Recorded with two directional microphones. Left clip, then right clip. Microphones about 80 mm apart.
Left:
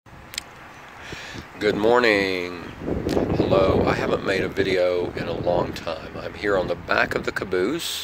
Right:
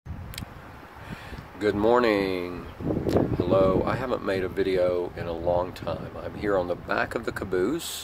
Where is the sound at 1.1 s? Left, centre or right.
Right.